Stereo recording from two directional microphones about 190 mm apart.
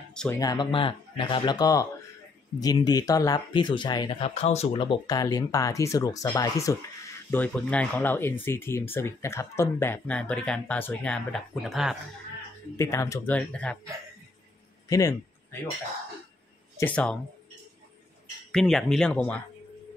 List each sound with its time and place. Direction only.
0.1 s speech: 5° left (ahead or behind)
0.4 s speech: 20° left (ahead or behind); by 12.0 s centre (ahead or behind)
12.7 s speech: 15° left (ahead or behind)
14.9 s speech: 20° left (ahead or behind)
16.7 s speech: 10° left (ahead or behind)
18.5 s speech: centre (ahead or behind)